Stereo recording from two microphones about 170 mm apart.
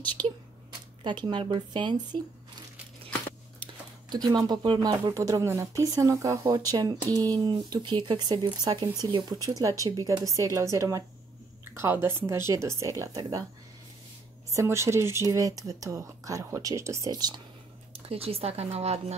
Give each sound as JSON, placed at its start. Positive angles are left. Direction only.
{"t": 0.2, "sound": "speech", "side_deg": -25}
{"t": 3.1, "sound": "tearing", "side_deg": 10}
{"t": 4.1, "sound": "speech", "side_deg": -25}
{"t": 14.5, "sound": "speech", "side_deg": -15}
{"t": 18.0, "sound": "speech", "side_deg": -35}